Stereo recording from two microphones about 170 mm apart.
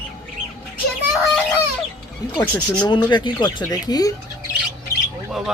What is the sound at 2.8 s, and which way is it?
Speech, 25° left (ahead or behind).